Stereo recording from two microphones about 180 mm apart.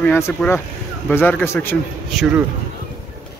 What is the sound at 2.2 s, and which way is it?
Speech, 5° right (ahead or behind).